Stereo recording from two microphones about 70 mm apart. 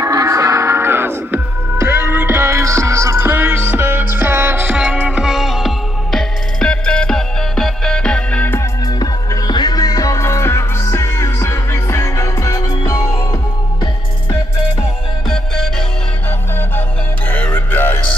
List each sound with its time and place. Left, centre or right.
0.1 s music: right
3.3 s music: right
4.7 s music: centre
6.1 s music: centre
8.8 s music: left
10.2 s music: left
15.2 s music: centre
17.3 s music: left